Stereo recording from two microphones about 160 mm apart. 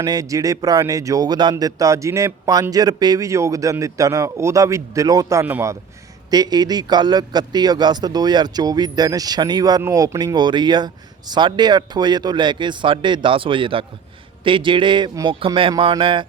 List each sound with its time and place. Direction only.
0.0 s a man's voice: 25° right (ahead or behind)